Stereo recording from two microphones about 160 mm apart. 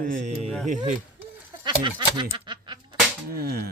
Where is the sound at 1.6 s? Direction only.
30° right (ahead or behind).